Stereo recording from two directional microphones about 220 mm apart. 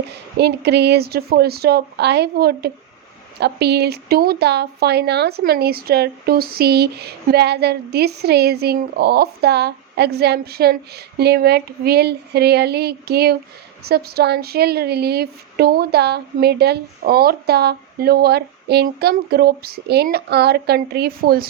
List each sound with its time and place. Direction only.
0.3 s a woman's voice: 50° right (ahead or behind)